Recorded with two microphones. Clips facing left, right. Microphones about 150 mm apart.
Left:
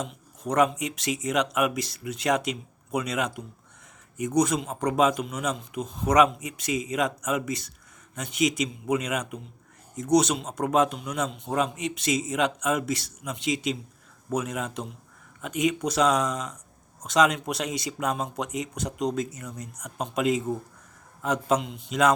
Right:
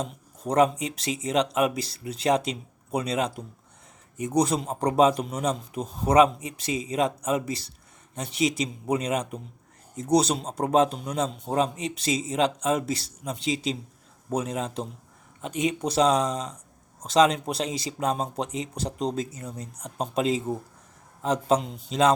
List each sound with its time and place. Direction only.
0.0 s a man's voice: 30° right (ahead or behind)